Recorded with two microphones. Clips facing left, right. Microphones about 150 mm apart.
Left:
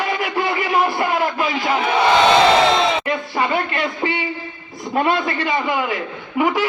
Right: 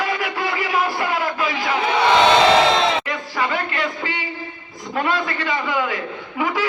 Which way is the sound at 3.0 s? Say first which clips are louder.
Left 3 dB; 25° left (ahead or behind).